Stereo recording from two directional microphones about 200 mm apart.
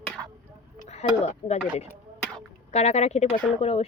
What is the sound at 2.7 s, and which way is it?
Speech, 35° left (ahead or behind).